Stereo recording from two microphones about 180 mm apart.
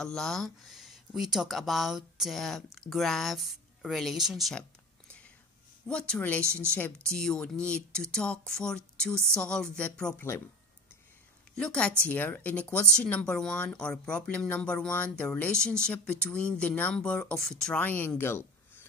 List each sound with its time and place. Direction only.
0.0 s speech: 5° left (ahead or behind)
6.4 s speech: 15° right (ahead or behind)
6.8 s speech: 5° left (ahead or behind)
11.5 s a woman's voice: 5° left (ahead or behind)